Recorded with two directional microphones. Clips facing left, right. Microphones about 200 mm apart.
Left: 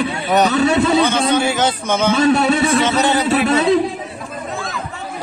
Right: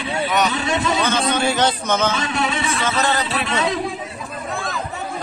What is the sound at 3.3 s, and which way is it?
Speech, 40° left (ahead or behind).